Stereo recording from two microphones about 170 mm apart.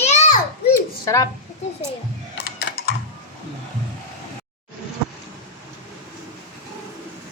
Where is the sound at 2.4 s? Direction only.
70° left (ahead or behind).